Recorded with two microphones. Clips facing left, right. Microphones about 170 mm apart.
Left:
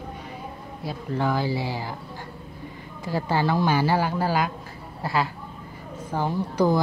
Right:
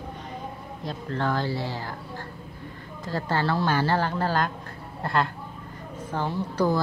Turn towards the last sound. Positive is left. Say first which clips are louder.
# left 3 dB
turn(degrees=15)  # may be behind; listen again after turning